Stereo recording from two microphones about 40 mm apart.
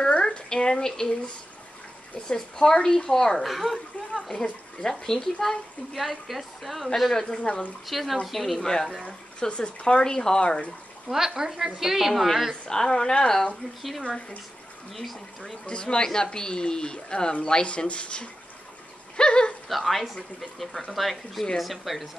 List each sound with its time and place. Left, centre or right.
0.2 s a sound: centre
2.2 s a woman's voice: centre
3.3 s speech: centre
4.3 s a woman's voice: centre
5.9 s a woman's voice: centre
7.2 s speech: left
7.8 s speech: centre
9.5 s speech: left
10.0 s a woman's voice: centre
11.1 s a woman's voice: centre
12.6 s a woman's voice: centre
14.9 s speech: centre
15.6 s speech: left
19.7 s speech: centre